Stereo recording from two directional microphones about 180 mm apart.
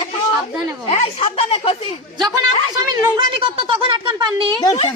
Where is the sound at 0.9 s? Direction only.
35° left (ahead or behind).